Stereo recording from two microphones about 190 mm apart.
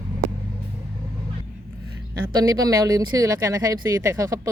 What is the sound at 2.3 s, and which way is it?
Speech, 20° right (ahead or behind).